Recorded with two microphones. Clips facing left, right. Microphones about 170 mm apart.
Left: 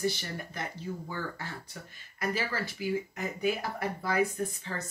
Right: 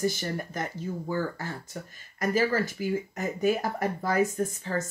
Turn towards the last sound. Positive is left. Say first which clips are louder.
# right 6 dB
turn(degrees=-45)  # may be behind; listen again after turning